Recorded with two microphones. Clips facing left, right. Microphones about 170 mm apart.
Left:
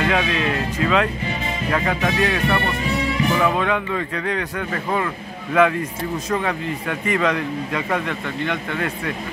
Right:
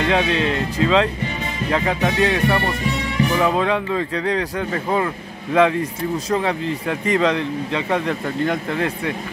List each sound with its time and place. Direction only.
0.1 s speech: 30° right (ahead or behind)
3.4 s speech: 30° right (ahead or behind)